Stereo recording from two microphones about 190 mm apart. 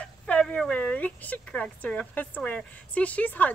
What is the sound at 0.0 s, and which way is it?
Speech, 5° left (ahead or behind).